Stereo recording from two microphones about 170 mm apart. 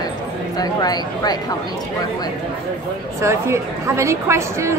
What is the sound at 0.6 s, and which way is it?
Speech, 25° left (ahead or behind).